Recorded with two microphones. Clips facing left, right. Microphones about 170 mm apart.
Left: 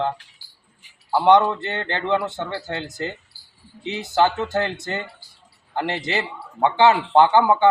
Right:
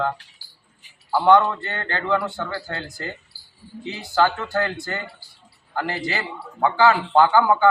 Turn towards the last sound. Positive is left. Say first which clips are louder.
# left 1 dB
turn(degrees=20)  # may be behind; listen again after turning